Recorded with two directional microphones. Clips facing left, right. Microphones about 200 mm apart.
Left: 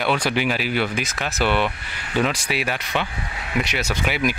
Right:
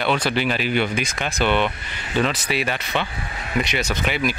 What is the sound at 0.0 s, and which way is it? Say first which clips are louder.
Speech: even; 10° left (ahead or behind).